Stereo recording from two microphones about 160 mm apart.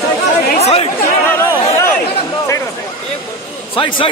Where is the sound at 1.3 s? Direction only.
10° left (ahead or behind).